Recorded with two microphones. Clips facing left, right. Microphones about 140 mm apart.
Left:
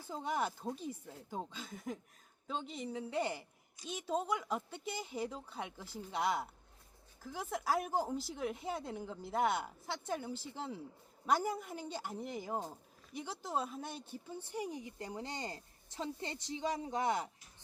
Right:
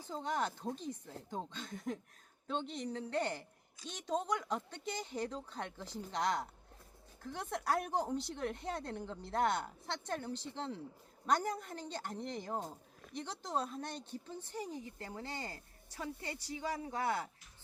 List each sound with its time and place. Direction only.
0.0 s a woman's voice: 10° left (ahead or behind)